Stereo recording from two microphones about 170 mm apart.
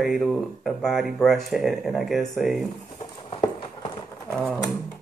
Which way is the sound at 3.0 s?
45° left (ahead or behind).